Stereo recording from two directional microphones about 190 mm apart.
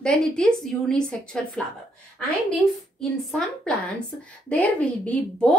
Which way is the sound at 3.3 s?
5° left (ahead or behind).